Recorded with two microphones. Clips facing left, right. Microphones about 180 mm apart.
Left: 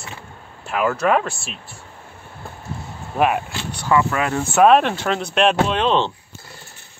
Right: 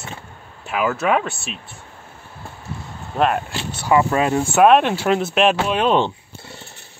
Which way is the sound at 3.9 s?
30° right (ahead or behind).